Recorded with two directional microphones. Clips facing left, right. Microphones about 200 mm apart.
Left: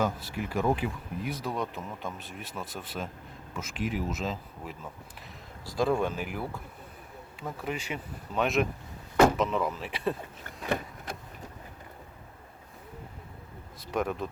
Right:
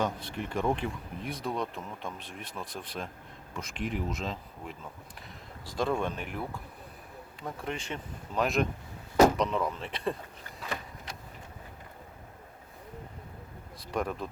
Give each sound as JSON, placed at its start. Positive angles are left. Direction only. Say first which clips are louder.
{"t": 0.0, "sound": "speech", "louder": "left 2 dB", "side_deg": 5}
{"t": 10.7, "sound": "vehicle", "louder": "left 8 dB", "side_deg": 55}
{"t": 13.9, "sound": "speech", "louder": "left 2 dB", "side_deg": 0}